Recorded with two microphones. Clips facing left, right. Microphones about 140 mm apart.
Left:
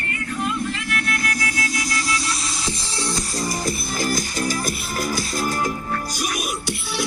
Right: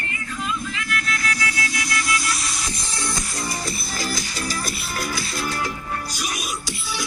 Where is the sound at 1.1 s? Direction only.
50° left (ahead or behind).